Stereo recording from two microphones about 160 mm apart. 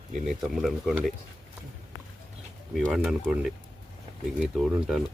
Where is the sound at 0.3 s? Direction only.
Centre (ahead or behind).